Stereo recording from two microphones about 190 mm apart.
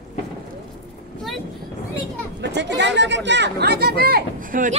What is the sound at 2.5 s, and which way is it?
Speech, 65° right (ahead or behind).